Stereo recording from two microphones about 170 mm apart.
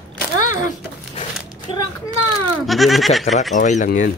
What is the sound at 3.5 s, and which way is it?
Speech, 45° left (ahead or behind).